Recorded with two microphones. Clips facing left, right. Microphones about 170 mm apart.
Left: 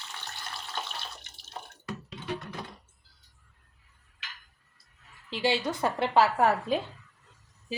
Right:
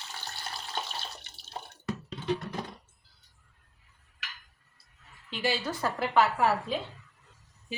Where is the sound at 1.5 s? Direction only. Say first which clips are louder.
Right 1 dB; 30° right (ahead or behind).